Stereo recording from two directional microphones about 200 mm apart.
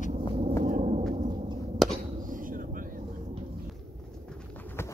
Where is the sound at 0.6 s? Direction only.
40° right (ahead or behind).